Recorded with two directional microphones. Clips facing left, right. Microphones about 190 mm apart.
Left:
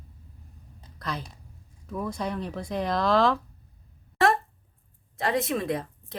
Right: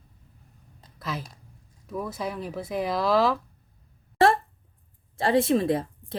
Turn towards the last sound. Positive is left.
turn(degrees=-30)  # may be behind; listen again after turning